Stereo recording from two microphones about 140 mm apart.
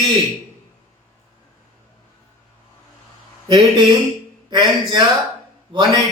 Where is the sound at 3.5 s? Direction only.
35° right (ahead or behind).